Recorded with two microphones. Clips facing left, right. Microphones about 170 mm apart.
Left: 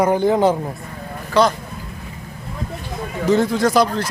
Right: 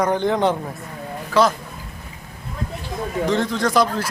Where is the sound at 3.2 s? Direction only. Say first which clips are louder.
Left 5 dB; 10° left (ahead or behind).